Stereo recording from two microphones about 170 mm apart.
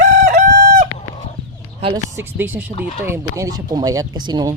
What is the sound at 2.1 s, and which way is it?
Speech, 10° right (ahead or behind).